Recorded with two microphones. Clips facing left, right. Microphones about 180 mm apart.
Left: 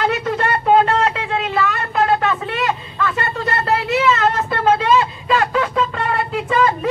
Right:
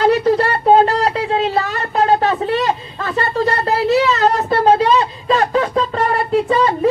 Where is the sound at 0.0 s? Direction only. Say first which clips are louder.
Right 6 dB; 35° right (ahead or behind).